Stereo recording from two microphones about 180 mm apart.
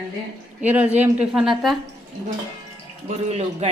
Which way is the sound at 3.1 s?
35° right (ahead or behind).